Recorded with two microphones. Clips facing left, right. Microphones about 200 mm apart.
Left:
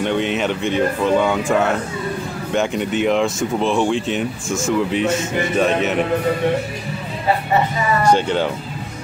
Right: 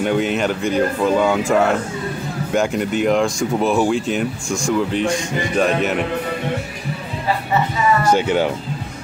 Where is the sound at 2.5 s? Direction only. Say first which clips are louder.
Right 1 dB; centre (ahead or behind).